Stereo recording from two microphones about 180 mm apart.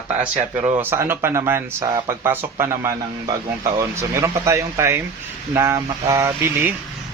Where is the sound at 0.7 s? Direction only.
10° right (ahead or behind).